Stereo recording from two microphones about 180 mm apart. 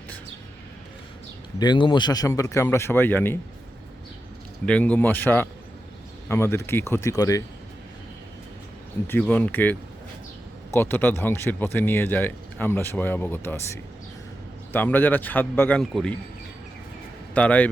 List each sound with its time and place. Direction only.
1.5 s speech: 25° left (ahead or behind)
4.6 s speech: 5° left (ahead or behind)
9.0 s speech: 10° left (ahead or behind)
14.7 s speech: 10° left (ahead or behind)
17.3 s speech: 10° left (ahead or behind)